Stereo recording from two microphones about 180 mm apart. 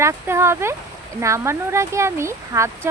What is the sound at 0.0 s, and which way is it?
Speech, 15° right (ahead or behind).